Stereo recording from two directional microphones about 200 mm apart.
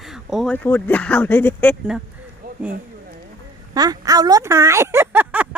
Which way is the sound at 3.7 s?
20° right (ahead or behind).